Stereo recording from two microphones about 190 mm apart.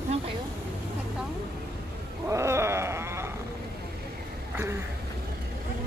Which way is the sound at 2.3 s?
15° right (ahead or behind).